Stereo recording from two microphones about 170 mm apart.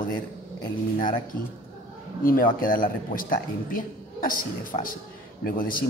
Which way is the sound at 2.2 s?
55° left (ahead or behind).